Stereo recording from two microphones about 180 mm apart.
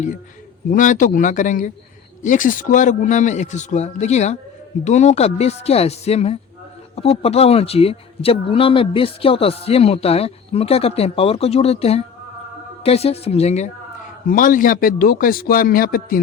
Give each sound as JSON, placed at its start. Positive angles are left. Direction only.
{"t": 0.7, "sound": "a man's voice", "side_deg": 45}
{"t": 14.3, "sound": "a man's voice", "side_deg": 50}